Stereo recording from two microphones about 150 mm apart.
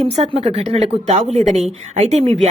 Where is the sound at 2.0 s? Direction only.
45° right (ahead or behind).